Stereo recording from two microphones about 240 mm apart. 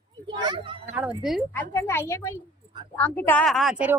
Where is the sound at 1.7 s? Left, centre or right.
Centre.